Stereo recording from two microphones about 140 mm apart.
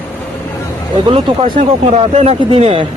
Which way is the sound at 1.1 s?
35° right (ahead or behind).